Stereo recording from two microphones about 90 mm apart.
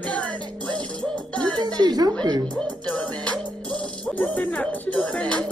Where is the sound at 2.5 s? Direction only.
15° left (ahead or behind).